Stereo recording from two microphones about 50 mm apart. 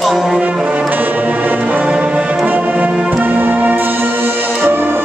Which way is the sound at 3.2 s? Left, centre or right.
Right.